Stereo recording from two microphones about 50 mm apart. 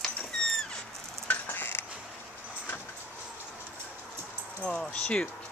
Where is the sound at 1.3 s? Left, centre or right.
Left.